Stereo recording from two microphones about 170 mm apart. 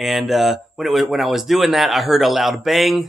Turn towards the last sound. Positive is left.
turn(degrees=0)  # may be behind; listen again after turning